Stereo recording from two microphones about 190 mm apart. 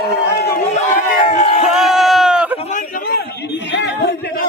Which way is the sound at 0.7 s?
30° left (ahead or behind).